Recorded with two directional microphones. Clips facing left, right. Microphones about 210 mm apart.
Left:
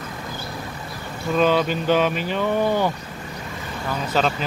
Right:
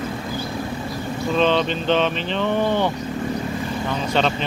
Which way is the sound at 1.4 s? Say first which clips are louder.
Left 1 dB; 5° left (ahead or behind).